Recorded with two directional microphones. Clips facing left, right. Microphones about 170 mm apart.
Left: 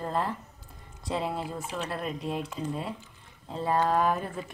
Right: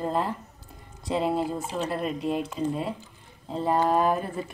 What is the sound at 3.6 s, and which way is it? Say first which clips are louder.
Speech: right 3 dB; 5° right (ahead or behind).